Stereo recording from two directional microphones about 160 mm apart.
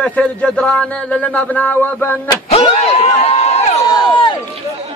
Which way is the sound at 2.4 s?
40° left (ahead or behind).